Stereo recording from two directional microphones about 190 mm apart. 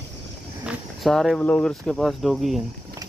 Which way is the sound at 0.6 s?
Centre (ahead or behind).